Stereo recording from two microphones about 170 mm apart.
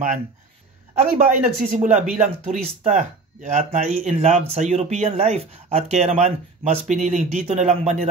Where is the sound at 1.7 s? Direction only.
50° right (ahead or behind).